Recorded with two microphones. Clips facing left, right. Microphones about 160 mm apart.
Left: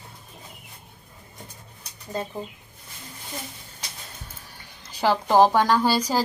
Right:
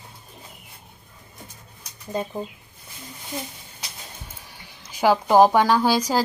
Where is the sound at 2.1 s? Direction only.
20° right (ahead or behind).